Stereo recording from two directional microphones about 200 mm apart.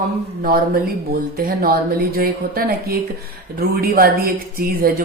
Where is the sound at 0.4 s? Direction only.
45° right (ahead or behind).